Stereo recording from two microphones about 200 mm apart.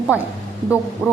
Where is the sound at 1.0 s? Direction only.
5° right (ahead or behind).